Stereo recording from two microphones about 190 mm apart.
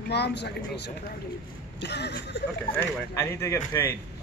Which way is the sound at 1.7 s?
60° left (ahead or behind).